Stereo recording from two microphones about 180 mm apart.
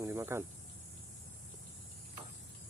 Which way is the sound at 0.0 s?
15° right (ahead or behind).